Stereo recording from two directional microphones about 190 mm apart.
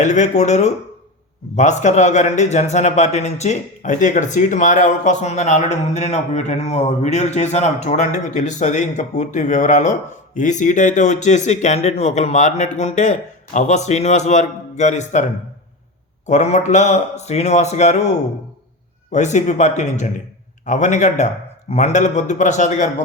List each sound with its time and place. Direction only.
0.0 s a man's voice: 40° left (ahead or behind)
16.2 s a man's voice: 40° left (ahead or behind)